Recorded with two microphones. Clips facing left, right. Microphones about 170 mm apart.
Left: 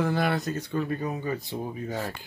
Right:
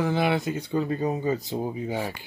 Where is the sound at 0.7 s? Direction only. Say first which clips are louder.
Right 5 dB; 20° right (ahead or behind); by 2.2 s 5° right (ahead or behind).